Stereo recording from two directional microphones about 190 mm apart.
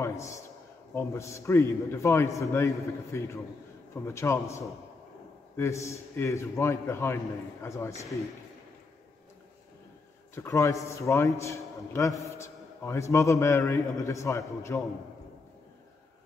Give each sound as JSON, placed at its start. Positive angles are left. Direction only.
{"t": 0.0, "sound": "a sound", "side_deg": 15}
{"t": 0.9, "sound": "a man's voice", "side_deg": 15}
{"t": 5.6, "sound": "a man's voice", "side_deg": 15}
{"t": 10.3, "sound": "a man's voice", "side_deg": 15}